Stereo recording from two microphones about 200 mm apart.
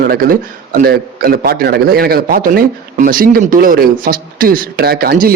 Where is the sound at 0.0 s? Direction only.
45° right (ahead or behind).